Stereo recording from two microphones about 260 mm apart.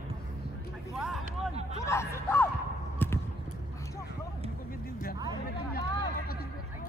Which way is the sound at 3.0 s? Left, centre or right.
Centre.